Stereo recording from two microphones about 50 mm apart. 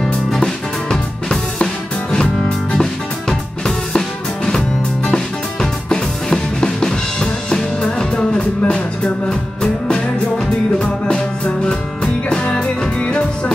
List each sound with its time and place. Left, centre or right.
0.0 s music: centre